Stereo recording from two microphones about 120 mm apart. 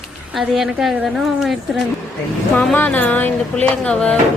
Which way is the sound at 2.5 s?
10° left (ahead or behind).